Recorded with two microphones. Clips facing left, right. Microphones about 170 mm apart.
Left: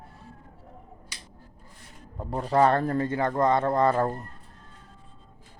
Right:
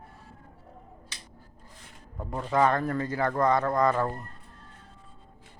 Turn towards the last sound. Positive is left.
turn(degrees=30)  # may be behind; listen again after turning